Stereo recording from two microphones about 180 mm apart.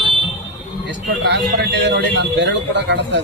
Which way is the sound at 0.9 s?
75° right (ahead or behind).